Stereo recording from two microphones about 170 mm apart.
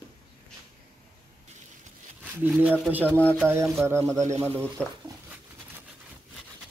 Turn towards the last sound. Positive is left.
turn(degrees=-15)  # may be behind; listen again after turning